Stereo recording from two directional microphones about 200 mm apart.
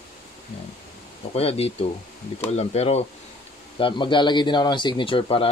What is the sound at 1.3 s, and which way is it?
Speech, 30° left (ahead or behind).